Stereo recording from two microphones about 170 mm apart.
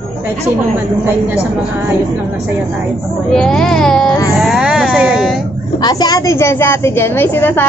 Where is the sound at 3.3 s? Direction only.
5° left (ahead or behind).